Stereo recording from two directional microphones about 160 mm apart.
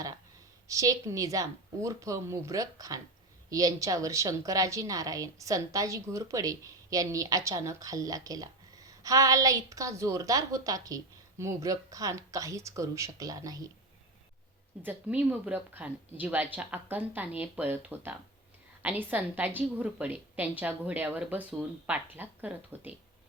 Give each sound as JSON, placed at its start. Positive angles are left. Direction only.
{"t": 0.7, "sound": "a woman's voice", "side_deg": -20}
{"t": 14.8, "sound": "a woman's voice", "side_deg": -10}